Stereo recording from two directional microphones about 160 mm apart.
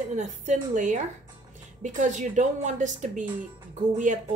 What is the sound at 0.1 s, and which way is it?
Speech, 50° right (ahead or behind).